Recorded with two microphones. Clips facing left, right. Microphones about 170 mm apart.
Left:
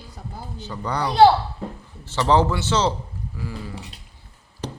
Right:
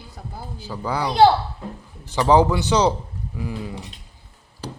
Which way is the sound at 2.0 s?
10° right (ahead or behind).